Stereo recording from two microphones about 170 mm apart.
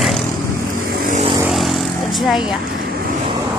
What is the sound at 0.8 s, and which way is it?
Vehicle, 55° right (ahead or behind).